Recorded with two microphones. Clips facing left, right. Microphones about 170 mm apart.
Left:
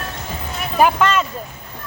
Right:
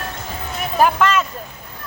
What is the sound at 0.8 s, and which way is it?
Speech, centre (ahead or behind).